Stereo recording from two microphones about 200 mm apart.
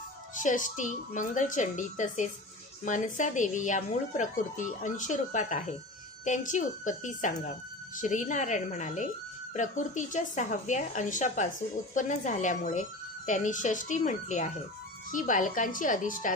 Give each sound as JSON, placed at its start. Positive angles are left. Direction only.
{"t": 0.4, "sound": "speech", "side_deg": 40}